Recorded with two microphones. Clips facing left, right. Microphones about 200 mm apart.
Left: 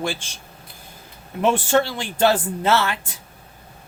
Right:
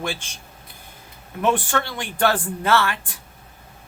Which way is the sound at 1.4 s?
25° left (ahead or behind).